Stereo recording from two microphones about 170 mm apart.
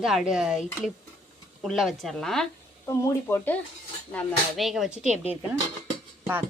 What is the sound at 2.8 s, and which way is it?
Speech, 15° left (ahead or behind).